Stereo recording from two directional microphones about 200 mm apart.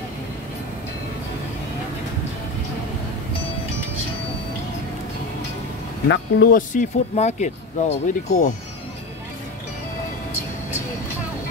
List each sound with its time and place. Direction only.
6.0 s speech: 60° left (ahead or behind)
6.5 s speech: 40° left (ahead or behind)